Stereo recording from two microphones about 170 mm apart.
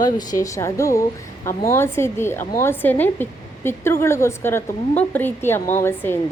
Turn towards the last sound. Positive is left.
turn(degrees=15)  # may be behind; listen again after turning